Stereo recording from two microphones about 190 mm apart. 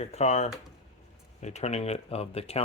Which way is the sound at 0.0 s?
35° left (ahead or behind).